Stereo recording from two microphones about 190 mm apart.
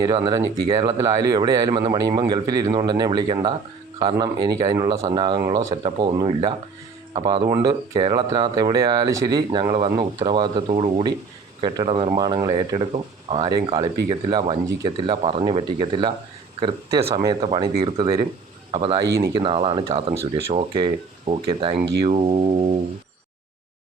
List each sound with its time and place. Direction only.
0.0 s speech: 20° right (ahead or behind)